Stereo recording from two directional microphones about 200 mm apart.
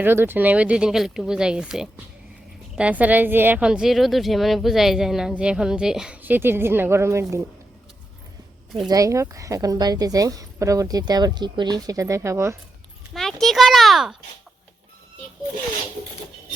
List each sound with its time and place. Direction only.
0.0 s a woman's voice: 10° right (ahead or behind)
8.9 s a woman's voice: 15° right (ahead or behind)
13.1 s a woman's voice: centre (ahead or behind)